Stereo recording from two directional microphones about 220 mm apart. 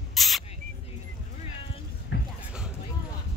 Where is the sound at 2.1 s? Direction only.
55° left (ahead or behind).